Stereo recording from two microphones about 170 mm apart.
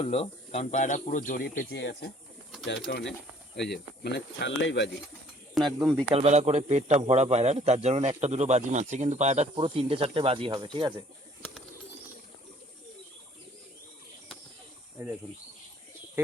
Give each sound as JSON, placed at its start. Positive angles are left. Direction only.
{"t": 0.0, "sound": "speech", "side_deg": 35}
{"t": 1.7, "sound": "speech", "side_deg": 85}
{"t": 5.6, "sound": "speech", "side_deg": 0}
{"t": 6.1, "sound": "a man's voice", "side_deg": -40}
{"t": 14.9, "sound": "speech", "side_deg": -10}